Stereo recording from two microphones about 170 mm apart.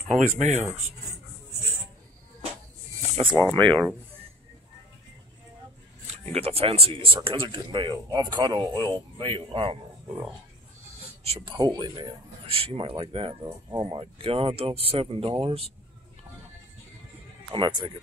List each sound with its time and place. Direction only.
0.4 s speech: 40° right (ahead or behind)
3.0 s a sound: 30° right (ahead or behind)
3.3 s speech: 10° left (ahead or behind)
6.3 s speech: 35° right (ahead or behind)
11.0 s a sound: 35° right (ahead or behind)
11.5 s speech: 25° right (ahead or behind)
13.7 s speech: 20° right (ahead or behind)
13.9 s speech: 35° right (ahead or behind)
17.5 s speech: 30° right (ahead or behind)